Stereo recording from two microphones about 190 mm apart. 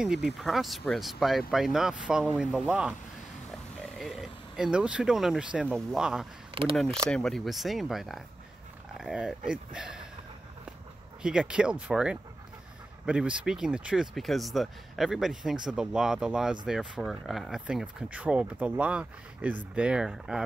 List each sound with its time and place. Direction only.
0.0 s speech: 5° right (ahead or behind)
6.5 s speech: 30° right (ahead or behind)
7.1 s speech: centre (ahead or behind)
11.2 s speech: 5° right (ahead or behind)